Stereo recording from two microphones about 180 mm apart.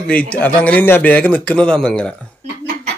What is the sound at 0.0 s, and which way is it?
A man's voice, 5° left (ahead or behind).